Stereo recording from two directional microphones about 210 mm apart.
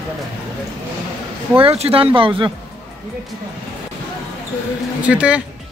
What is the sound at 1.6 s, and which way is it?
Speech, 30° right (ahead or behind).